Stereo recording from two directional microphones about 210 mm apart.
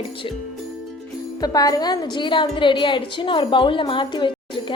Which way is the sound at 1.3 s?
20° left (ahead or behind).